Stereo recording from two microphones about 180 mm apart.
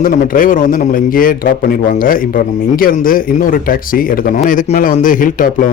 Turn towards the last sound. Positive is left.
turn(degrees=50)  # may be behind; listen again after turning